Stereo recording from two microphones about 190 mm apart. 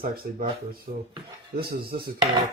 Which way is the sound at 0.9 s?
50° right (ahead or behind).